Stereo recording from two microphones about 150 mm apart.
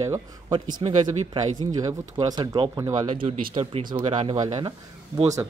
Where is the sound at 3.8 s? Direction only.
35° right (ahead or behind).